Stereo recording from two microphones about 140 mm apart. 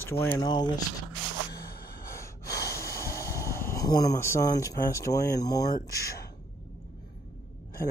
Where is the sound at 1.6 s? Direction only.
90° left.